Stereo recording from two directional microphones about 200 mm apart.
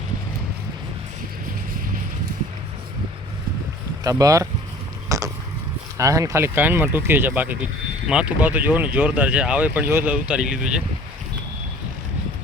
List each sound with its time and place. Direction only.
4.0 s speech: 15° right (ahead or behind)
5.0 s a sound: 15° right (ahead or behind)
6.0 s speech: 15° right (ahead or behind)